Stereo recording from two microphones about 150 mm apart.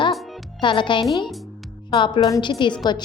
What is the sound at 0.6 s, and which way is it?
A woman's voice, 35° left (ahead or behind).